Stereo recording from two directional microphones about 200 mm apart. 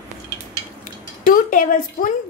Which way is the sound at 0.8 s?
45° left (ahead or behind).